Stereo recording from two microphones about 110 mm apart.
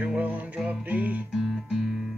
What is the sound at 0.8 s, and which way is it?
Music, 15° right (ahead or behind).